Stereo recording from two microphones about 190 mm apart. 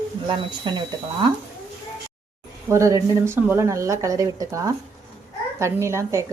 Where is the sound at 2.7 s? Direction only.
15° right (ahead or behind).